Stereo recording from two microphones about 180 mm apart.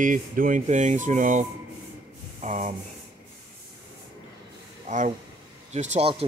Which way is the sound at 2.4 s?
45° right (ahead or behind).